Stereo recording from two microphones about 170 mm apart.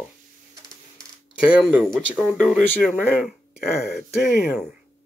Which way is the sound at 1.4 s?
10° right (ahead or behind).